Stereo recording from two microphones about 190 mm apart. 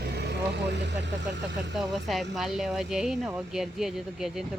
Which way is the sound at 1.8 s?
Centre (ahead or behind).